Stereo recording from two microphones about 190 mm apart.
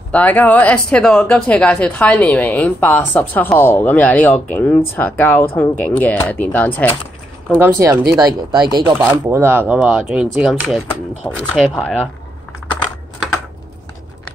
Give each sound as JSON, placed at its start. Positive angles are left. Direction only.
{"t": 0.1, "sound": "speech", "side_deg": 10}
{"t": 7.5, "sound": "speech", "side_deg": -15}
{"t": 8.9, "sound": "speech", "side_deg": -10}